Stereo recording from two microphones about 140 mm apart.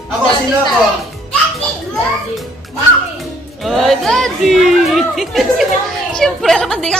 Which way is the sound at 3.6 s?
Centre (ahead or behind).